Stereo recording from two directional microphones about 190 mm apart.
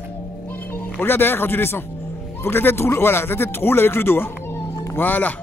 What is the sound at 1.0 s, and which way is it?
Speech, 10° left (ahead or behind).